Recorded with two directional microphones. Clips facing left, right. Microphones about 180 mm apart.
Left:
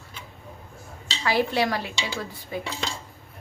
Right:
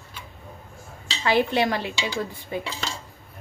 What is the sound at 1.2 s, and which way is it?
Speech, 20° right (ahead or behind).